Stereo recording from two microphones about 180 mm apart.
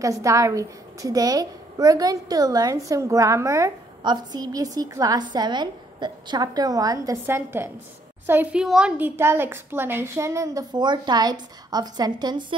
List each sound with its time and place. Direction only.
0.0 s a woman's voice: 20° right (ahead or behind)